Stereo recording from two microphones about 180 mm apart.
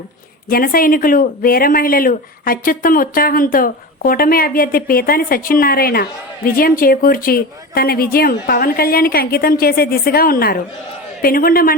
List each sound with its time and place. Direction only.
0.4 s a man's voice: 55° left (ahead or behind)